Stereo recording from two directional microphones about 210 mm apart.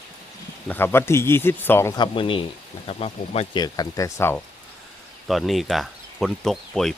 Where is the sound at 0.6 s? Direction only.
10° left (ahead or behind).